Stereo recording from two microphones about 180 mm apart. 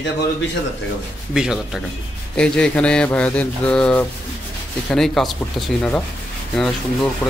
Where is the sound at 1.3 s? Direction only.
5° right (ahead or behind).